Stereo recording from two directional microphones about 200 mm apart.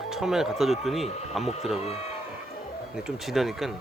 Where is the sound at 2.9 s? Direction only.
Centre (ahead or behind).